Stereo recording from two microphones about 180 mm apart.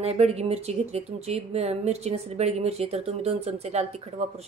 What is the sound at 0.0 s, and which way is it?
Speech, 35° right (ahead or behind).